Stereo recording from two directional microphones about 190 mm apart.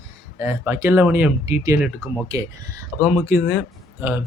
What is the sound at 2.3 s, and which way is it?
Speech, 15° right (ahead or behind).